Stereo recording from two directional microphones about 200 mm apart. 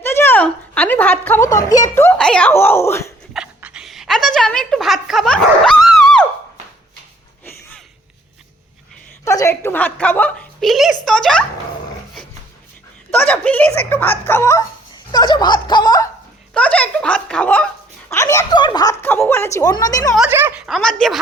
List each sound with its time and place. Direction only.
0.0 s a sound: 10° left (ahead or behind)
1.5 s a woman's voice: 15° left (ahead or behind)
3.3 s speech: 5° right (ahead or behind)
9.2 s a woman's voice: 15° left (ahead or behind)
13.1 s a woman's voice: 10° left (ahead or behind)
16.6 s a woman's voice: 5° left (ahead or behind)
20.1 s speech: 10° right (ahead or behind)